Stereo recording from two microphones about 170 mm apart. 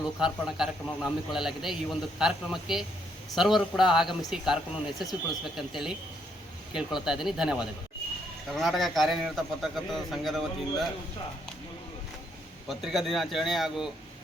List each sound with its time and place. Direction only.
0.2 s a man's voice: 5° right (ahead or behind)
12.6 s a man's voice: centre (ahead or behind)